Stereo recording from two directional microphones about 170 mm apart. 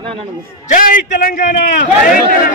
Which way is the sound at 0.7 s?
50° left (ahead or behind).